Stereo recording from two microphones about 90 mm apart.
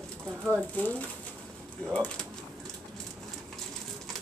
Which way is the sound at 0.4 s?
20° right (ahead or behind).